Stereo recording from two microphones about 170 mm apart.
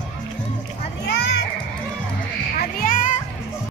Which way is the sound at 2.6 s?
55° left (ahead or behind).